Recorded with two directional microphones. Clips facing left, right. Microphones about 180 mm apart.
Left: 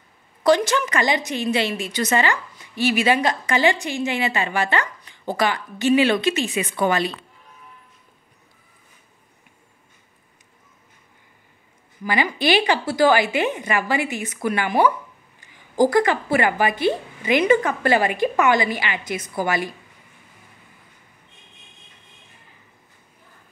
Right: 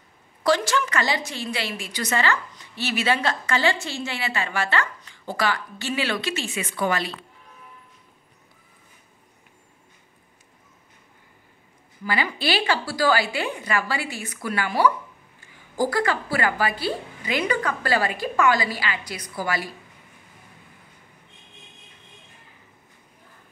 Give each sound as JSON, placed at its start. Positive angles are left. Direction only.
{"t": 0.4, "sound": "a woman's voice", "side_deg": 20}
{"t": 12.0, "sound": "a woman's voice", "side_deg": 15}